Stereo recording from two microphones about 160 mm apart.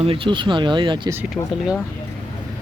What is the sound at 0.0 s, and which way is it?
Speech, 35° right (ahead or behind).